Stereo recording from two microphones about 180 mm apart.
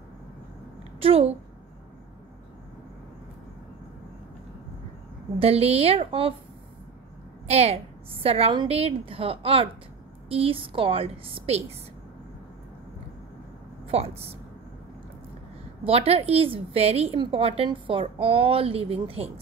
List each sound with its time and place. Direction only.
0.9 s a woman's voice: 30° right (ahead or behind)
5.4 s a woman's voice: 35° right (ahead or behind)
7.4 s a woman's voice: 35° right (ahead or behind)
13.8 s speech: 35° right (ahead or behind)
15.8 s a woman's voice: 35° right (ahead or behind)